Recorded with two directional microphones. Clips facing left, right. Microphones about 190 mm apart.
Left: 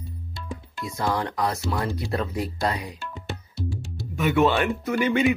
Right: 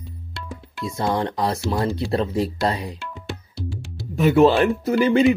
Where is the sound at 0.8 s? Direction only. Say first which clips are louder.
Right 4 dB; 25° right (ahead or behind).